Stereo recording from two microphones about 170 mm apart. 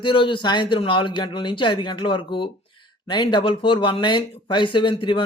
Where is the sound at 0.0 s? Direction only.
30° left (ahead or behind).